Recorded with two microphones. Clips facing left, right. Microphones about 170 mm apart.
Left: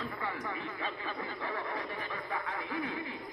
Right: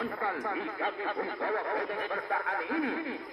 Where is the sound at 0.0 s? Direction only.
55° right (ahead or behind).